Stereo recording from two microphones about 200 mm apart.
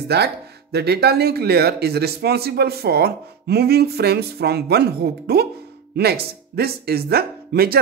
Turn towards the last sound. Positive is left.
turn(degrees=-50)  # may be behind; listen again after turning